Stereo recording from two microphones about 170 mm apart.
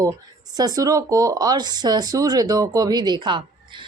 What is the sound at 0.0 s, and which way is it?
Speech, 20° right (ahead or behind).